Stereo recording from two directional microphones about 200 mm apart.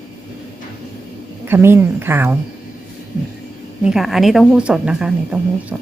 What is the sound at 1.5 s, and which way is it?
Speech, 10° right (ahead or behind).